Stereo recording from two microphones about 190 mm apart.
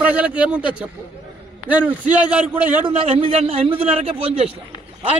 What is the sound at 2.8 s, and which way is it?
A man's voice, 30° right (ahead or behind).